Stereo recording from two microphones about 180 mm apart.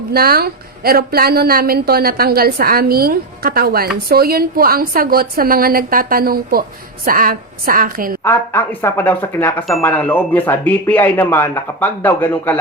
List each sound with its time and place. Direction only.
0.1 s a woman's voice: 60° right (ahead or behind)
8.2 s speech: 15° left (ahead or behind)